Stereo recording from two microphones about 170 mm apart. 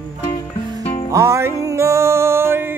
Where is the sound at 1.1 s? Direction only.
15° right (ahead or behind).